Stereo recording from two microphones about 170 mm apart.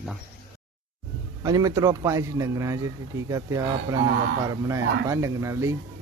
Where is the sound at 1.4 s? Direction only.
20° right (ahead or behind).